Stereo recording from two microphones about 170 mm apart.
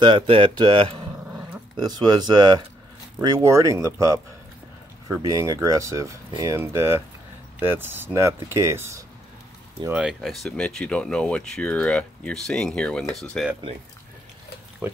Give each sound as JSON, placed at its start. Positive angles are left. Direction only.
{"t": 0.0, "sound": "speech", "side_deg": -30}
{"t": 5.2, "sound": "speech", "side_deg": -20}